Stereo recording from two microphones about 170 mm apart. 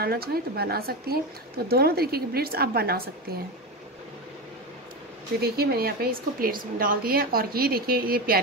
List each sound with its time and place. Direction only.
0.0 s a woman's voice: 65° right (ahead or behind)
5.4 s a woman's voice: 65° right (ahead or behind)